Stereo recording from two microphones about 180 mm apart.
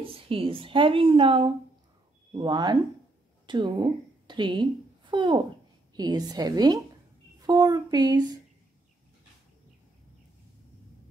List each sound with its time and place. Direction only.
0.0 s a woman's voice: 30° right (ahead or behind)